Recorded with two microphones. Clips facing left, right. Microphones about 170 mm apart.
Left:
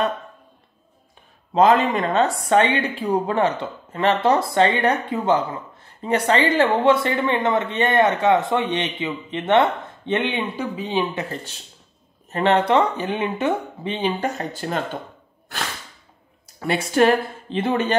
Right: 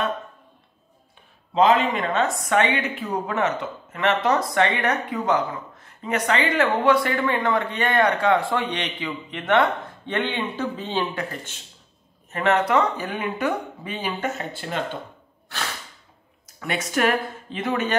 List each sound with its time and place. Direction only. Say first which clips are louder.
1.5 s speech: left 2 dB; 45° left (ahead or behind); by 11.1 s 10° left (ahead or behind)
12.3 s speech: left 3 dB; 30° left (ahead or behind)
14.5 s speech: left 4 dB; 40° left (ahead or behind)
16.5 s speech: left 6 dB; 30° left (ahead or behind)